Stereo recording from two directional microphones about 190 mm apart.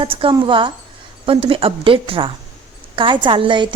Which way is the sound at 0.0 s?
30° right (ahead or behind).